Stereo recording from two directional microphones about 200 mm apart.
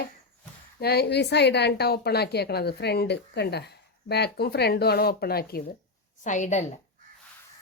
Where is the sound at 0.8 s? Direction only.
55° left (ahead or behind).